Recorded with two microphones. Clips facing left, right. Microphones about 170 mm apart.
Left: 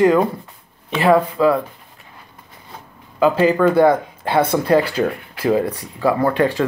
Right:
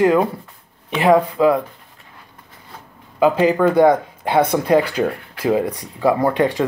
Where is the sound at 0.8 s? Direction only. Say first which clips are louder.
Even; 15° right (ahead or behind).